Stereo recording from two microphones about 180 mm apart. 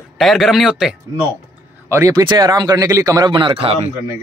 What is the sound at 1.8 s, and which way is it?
Speech, 15° right (ahead or behind).